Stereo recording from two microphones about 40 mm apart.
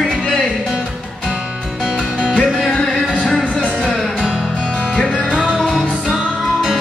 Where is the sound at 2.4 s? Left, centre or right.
Centre.